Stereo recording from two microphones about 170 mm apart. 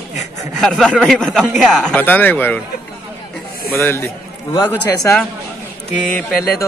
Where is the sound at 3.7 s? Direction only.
15° left (ahead or behind).